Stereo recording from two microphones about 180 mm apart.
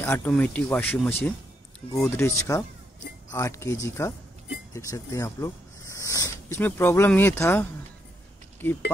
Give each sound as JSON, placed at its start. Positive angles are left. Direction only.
{"t": 0.0, "sound": "speech", "side_deg": 10}